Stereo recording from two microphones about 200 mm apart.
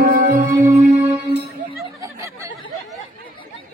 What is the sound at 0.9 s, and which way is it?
Music, 10° right (ahead or behind).